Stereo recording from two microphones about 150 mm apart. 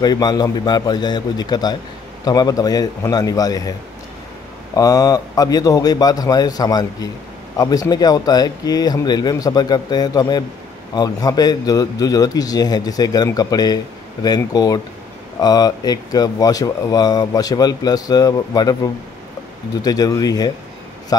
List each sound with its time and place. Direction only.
0.0 s speech: 25° left (ahead or behind)
4.7 s speech: 25° left (ahead or behind)
19.8 s speech: 25° left (ahead or behind)